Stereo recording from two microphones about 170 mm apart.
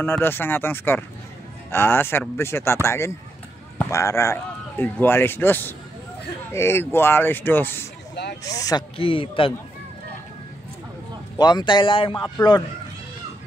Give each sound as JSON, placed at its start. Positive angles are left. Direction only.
{"t": 0.0, "sound": "speech", "side_deg": 15}
{"t": 8.9, "sound": "speech", "side_deg": 30}
{"t": 11.3, "sound": "speech", "side_deg": 25}